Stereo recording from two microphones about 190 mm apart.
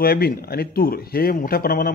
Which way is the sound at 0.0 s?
55° left (ahead or behind).